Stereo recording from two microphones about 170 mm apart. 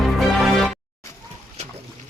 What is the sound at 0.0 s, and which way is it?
Music, centre (ahead or behind).